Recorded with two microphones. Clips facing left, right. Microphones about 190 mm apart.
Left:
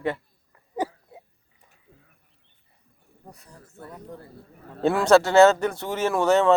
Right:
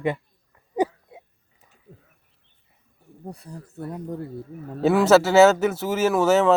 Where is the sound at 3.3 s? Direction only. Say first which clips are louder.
Right 10 dB; 30° right (ahead or behind).